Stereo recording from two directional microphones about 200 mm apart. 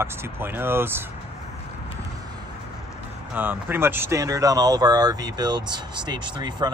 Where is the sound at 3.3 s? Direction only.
10° right (ahead or behind).